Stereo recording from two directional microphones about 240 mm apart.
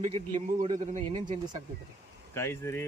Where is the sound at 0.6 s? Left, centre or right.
Right.